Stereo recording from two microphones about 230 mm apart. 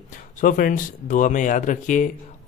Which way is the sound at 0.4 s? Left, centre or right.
Left.